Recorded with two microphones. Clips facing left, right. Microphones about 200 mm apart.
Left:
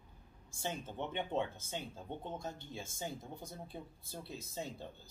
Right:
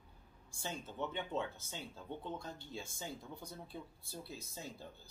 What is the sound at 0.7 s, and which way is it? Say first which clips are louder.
Speech: left 2 dB; 55° left (ahead or behind).